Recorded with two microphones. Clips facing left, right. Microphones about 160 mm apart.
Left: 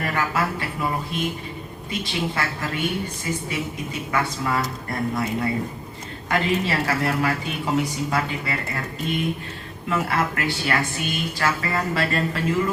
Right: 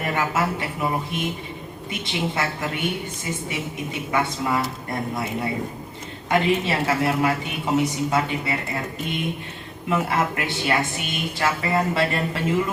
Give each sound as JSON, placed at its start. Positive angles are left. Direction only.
{"t": 0.0, "sound": "a woman's voice", "side_deg": -20}